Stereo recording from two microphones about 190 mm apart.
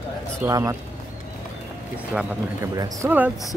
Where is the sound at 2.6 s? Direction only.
15° right (ahead or behind).